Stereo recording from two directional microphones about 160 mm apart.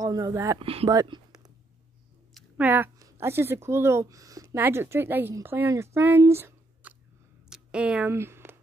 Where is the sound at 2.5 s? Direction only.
10° right (ahead or behind).